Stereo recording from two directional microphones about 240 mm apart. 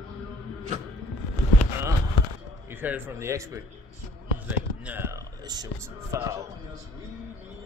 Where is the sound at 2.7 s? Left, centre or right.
Centre.